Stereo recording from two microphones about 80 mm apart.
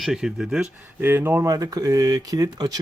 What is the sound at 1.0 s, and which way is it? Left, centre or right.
Speech, right.